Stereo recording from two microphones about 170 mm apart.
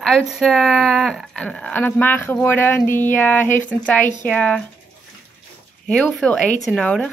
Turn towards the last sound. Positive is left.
turn(degrees=5)  # may be behind; listen again after turning